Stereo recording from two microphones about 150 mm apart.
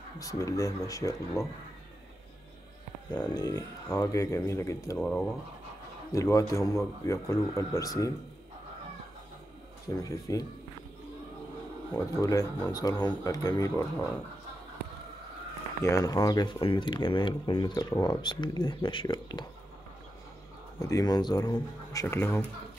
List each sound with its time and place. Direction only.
0.2 s speech: 20° left (ahead or behind)
3.1 s speech: 25° left (ahead or behind)
4.9 s speech: 10° left (ahead or behind)
6.1 s speech: 20° left (ahead or behind)
9.9 s speech: 25° left (ahead or behind)
12.2 s speech: 25° left (ahead or behind)
15.8 s speech: 20° left (ahead or behind)
20.8 s speech: 25° left (ahead or behind)
22.0 s speech: 15° left (ahead or behind)